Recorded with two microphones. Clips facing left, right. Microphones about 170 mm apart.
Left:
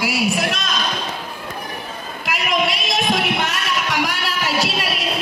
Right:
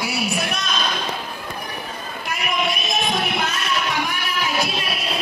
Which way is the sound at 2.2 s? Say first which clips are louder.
Left 3 dB; 90° left.